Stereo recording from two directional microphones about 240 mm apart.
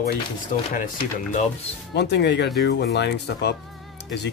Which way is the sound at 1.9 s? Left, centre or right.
Left.